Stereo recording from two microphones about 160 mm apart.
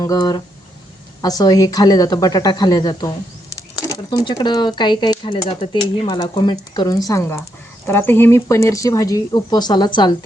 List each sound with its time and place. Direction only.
0.0 s speech: 25° left (ahead or behind)